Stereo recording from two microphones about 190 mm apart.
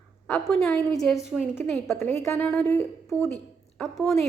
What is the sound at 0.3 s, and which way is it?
Speech, centre (ahead or behind).